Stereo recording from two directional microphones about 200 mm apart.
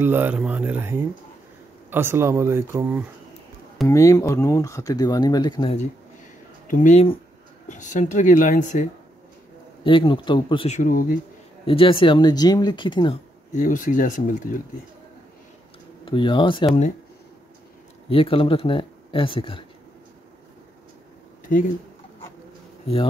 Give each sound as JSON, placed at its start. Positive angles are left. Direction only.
{"t": 0.0, "sound": "speech", "side_deg": -10}
{"t": 3.8, "sound": "speech", "side_deg": 15}
{"t": 6.7, "sound": "speech", "side_deg": 40}
{"t": 9.8, "sound": "speech", "side_deg": 25}
{"t": 10.8, "sound": "speech", "side_deg": 45}
{"t": 11.6, "sound": "speech", "side_deg": 25}
{"t": 13.6, "sound": "speech", "side_deg": 40}
{"t": 16.1, "sound": "speech", "side_deg": 25}
{"t": 18.1, "sound": "speech", "side_deg": 25}